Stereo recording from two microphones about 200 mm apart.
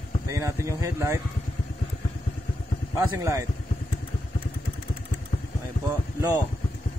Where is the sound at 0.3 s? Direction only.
15° right (ahead or behind).